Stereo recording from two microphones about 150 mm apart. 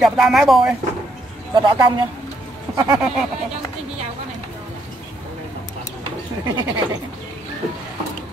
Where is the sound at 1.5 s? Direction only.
30° right (ahead or behind).